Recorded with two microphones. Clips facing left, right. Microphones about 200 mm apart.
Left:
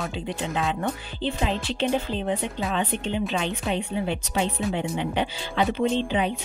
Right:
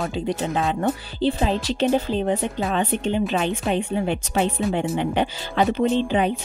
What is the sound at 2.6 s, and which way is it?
Speech, 45° right (ahead or behind).